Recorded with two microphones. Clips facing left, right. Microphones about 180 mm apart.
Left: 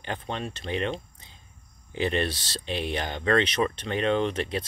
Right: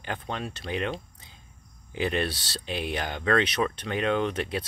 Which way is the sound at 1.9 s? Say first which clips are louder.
Left 1 dB; 5° right (ahead or behind).